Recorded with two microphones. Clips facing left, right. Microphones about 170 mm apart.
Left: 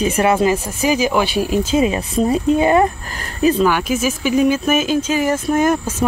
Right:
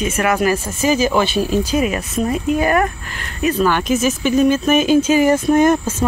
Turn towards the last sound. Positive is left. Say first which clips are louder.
# right 2 dB
turn(degrees=10)  # may be behind; listen again after turning